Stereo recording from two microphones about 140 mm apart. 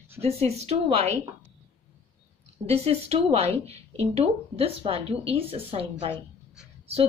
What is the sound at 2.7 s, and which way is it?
A woman's voice, 45° right (ahead or behind).